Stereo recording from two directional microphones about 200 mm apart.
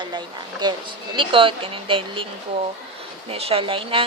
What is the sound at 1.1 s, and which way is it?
Speech, 25° right (ahead or behind).